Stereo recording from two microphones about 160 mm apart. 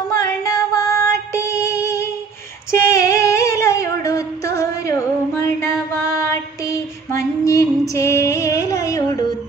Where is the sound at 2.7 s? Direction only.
20° left (ahead or behind).